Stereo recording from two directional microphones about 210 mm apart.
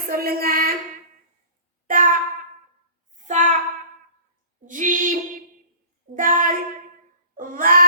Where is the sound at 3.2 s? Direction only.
35° right (ahead or behind).